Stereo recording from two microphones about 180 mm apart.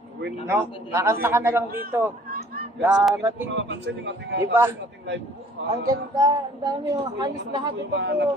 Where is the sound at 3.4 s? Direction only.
80° right.